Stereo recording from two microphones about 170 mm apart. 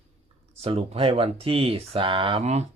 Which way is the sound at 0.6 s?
35° right (ahead or behind).